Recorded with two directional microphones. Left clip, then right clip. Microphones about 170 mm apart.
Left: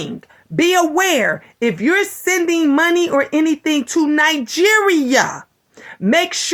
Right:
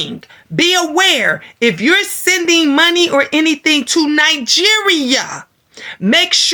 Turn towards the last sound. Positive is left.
turn(degrees=-35)  # may be behind; listen again after turning